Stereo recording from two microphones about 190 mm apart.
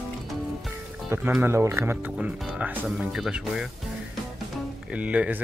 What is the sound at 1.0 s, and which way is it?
Speech, 15° right (ahead or behind).